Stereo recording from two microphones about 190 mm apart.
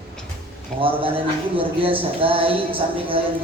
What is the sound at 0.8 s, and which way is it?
Speech, 30° right (ahead or behind).